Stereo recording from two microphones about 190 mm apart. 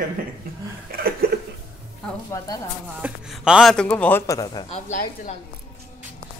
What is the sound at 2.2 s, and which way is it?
Speech, 15° left (ahead or behind).